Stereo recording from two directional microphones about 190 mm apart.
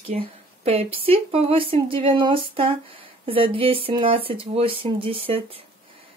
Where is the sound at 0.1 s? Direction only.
40° right (ahead or behind).